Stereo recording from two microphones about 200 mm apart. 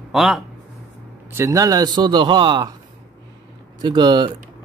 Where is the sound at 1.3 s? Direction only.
15° right (ahead or behind).